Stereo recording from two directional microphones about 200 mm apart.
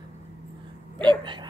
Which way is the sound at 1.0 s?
25° right (ahead or behind).